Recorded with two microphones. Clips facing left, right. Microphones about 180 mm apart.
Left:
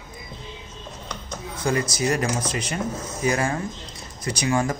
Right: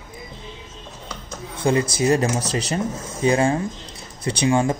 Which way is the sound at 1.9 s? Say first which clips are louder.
Right 4 dB; 30° right (ahead or behind).